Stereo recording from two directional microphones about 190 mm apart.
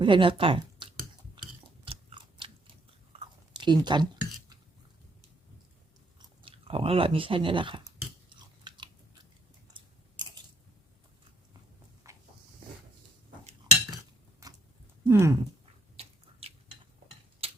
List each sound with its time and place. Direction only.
0.0 s speech: 25° right (ahead or behind)
1.8 s chewing: 25° right (ahead or behind)
6.4 s speech: 30° right (ahead or behind)
8.3 s chewing: 25° right (ahead or behind)
10.2 s biting: 25° right (ahead or behind)
12.1 s a sound: 15° right (ahead or behind)
15.0 s speech: 15° right (ahead or behind)
15.6 s biting: 30° right (ahead or behind)
17.4 s tick-tock: 30° right (ahead or behind)